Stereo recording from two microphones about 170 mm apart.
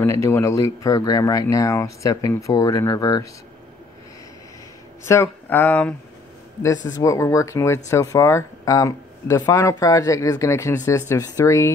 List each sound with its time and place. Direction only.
0.0 s speech: 15° left (ahead or behind)
5.0 s speech: 15° left (ahead or behind)
6.6 s speech: 20° left (ahead or behind)